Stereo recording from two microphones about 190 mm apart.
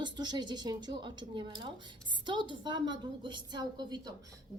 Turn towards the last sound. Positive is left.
turn(degrees=-20)  # may be behind; listen again after turning